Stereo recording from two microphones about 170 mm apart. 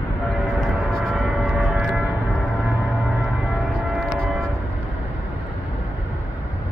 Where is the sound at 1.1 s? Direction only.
Centre (ahead or behind).